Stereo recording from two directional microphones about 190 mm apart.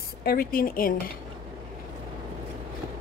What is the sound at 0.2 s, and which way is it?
Speech, 50° left (ahead or behind).